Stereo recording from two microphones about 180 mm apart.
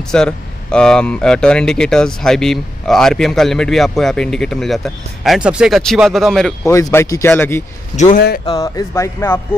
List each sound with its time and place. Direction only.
0.1 s speech: 5° left (ahead or behind)
6.6 s speech: 15° left (ahead or behind)
7.9 s speech: 40° left (ahead or behind)
8.5 s speech: 20° left (ahead or behind)